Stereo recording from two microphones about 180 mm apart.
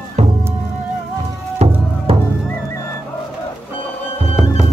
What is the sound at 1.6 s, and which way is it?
Music, 35° right (ahead or behind).